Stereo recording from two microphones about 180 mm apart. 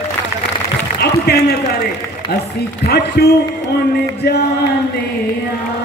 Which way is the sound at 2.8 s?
65° left (ahead or behind).